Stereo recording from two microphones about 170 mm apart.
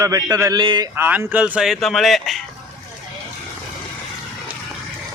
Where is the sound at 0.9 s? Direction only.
10° right (ahead or behind).